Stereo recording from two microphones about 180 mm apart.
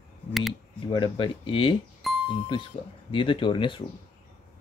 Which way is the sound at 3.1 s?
30° left (ahead or behind).